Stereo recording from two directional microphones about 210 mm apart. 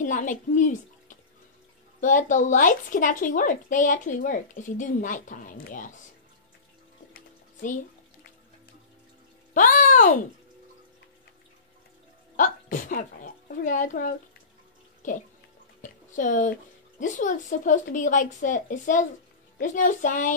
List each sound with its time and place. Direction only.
0.0 s a child's voice: 40° left (ahead or behind)
7.2 s bathtub: 40° left (ahead or behind)
9.5 s speech: 40° left (ahead or behind)
12.4 s speech: 40° left (ahead or behind)
15.8 s drip: 40° left (ahead or behind)
17.0 s speech: 35° left (ahead or behind)